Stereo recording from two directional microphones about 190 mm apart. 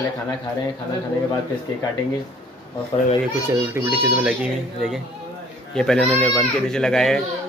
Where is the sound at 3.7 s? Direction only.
10° right (ahead or behind).